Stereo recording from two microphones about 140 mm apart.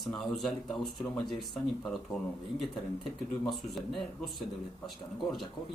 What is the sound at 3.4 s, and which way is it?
Speech, centre (ahead or behind).